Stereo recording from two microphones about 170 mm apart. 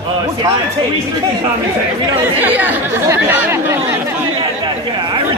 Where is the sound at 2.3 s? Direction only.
10° right (ahead or behind).